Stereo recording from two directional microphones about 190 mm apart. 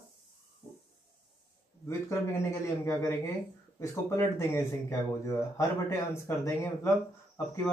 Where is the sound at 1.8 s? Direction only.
15° left (ahead or behind).